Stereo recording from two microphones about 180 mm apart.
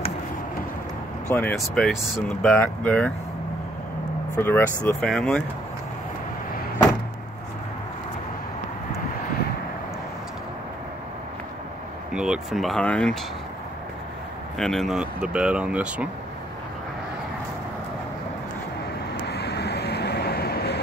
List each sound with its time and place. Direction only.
1.3 s speech: 5° left (ahead or behind)
4.4 s speech: 15° left (ahead or behind)
12.1 s speech: 5° right (ahead or behind)
14.6 s speech: centre (ahead or behind)
19.2 s vehicle: 65° left (ahead or behind)